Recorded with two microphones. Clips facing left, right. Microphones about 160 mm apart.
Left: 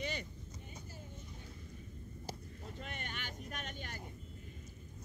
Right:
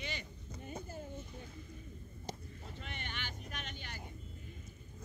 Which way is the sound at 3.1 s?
45° left (ahead or behind).